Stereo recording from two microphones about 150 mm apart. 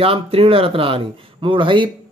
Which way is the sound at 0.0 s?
40° right (ahead or behind).